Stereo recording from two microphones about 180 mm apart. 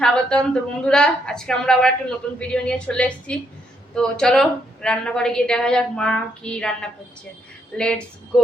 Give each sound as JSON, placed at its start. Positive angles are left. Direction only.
{"t": 0.0, "sound": "a woman's voice", "side_deg": 5}